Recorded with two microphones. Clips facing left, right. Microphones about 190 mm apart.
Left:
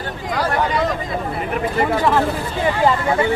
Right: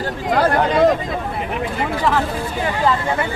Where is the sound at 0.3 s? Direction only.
55° right (ahead or behind).